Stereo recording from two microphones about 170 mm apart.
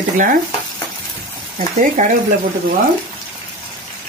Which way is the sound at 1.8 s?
45° right (ahead or behind).